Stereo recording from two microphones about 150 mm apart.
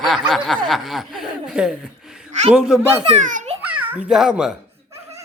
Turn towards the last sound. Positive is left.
turn(degrees=-5)  # may be behind; listen again after turning